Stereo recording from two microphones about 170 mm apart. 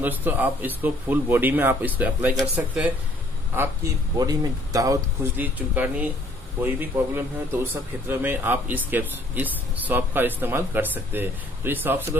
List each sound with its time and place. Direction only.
0.0 s speech: 10° right (ahead or behind)
3.5 s speech: 20° right (ahead or behind)